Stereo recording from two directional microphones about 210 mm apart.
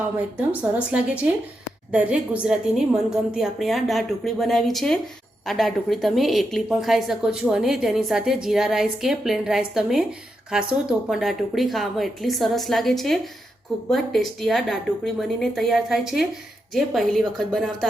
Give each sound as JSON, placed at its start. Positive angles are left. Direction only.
{"t": 0.3, "sound": "a woman's voice", "side_deg": -5}